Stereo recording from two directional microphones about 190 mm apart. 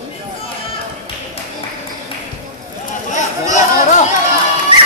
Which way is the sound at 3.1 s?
40° left (ahead or behind).